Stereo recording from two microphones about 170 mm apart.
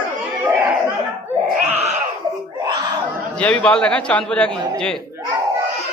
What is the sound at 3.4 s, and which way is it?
A man's voice, 5° left (ahead or behind).